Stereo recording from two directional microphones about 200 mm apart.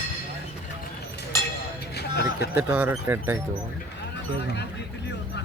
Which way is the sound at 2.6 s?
10° right (ahead or behind).